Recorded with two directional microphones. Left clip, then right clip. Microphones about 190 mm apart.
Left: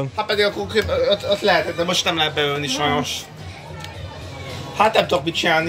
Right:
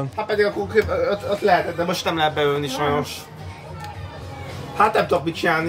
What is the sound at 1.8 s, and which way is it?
Speech, 60° right (ahead or behind).